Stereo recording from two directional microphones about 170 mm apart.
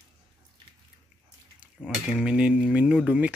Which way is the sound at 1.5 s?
5° right (ahead or behind).